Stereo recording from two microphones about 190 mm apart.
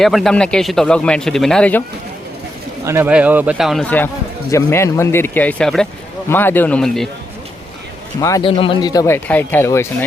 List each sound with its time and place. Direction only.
0.0 s speech: centre (ahead or behind)
2.8 s speech: 10° right (ahead or behind)
8.2 s speech: 15° left (ahead or behind)
8.4 s speech: 30° left (ahead or behind); by 9.8 s 10° left (ahead or behind)